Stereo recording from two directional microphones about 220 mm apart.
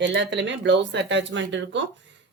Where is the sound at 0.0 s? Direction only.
55° right (ahead or behind).